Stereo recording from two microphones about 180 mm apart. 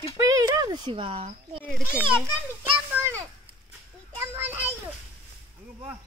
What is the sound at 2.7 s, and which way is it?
Speech, 10° right (ahead or behind).